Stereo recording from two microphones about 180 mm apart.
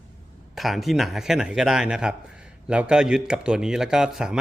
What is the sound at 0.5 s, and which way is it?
A man's voice, centre (ahead or behind).